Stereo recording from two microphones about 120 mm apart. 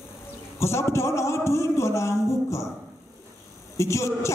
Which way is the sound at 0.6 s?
25° left (ahead or behind).